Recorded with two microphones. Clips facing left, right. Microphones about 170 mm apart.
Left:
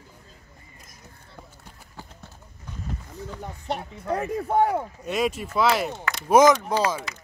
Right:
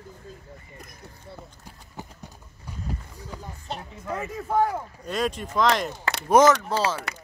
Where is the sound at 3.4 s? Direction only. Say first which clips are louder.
Left 6 dB; 70° left (ahead or behind).